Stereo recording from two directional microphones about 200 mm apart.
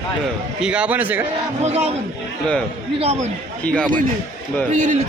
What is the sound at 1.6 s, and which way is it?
Speech, 35° right (ahead or behind).